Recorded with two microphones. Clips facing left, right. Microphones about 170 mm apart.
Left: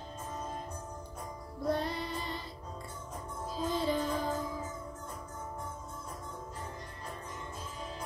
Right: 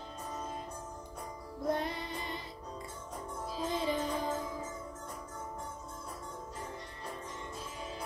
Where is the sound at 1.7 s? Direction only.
20° right (ahead or behind).